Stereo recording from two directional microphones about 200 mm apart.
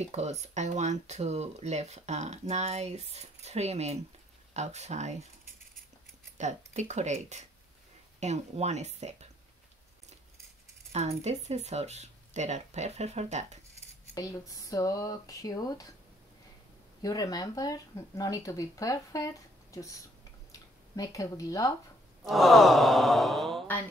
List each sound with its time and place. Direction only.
0.0 s speech: 35° right (ahead or behind)
6.3 s speech: 35° right (ahead or behind)
10.9 s speech: 35° right (ahead or behind)
14.1 s speech: 15° left (ahead or behind)
17.0 s speech: 20° left (ahead or behind)
22.3 s sigh: centre (ahead or behind)